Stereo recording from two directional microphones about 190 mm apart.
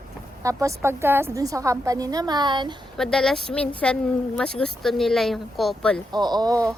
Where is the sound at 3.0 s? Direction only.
Centre (ahead or behind).